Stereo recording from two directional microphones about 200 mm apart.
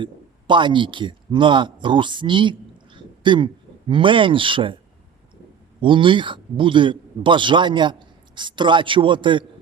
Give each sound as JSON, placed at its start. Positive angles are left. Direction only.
{"t": 0.0, "sound": "a man's voice", "side_deg": -25}
{"t": 5.8, "sound": "a man's voice", "side_deg": -25}